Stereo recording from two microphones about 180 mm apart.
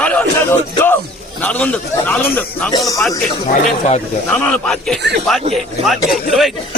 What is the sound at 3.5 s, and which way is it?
Speech, 35° left (ahead or behind).